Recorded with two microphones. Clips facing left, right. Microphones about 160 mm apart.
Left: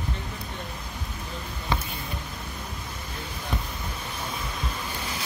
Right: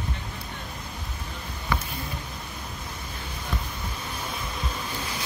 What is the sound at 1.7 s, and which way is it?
Basketball bounce, 20° left (ahead or behind).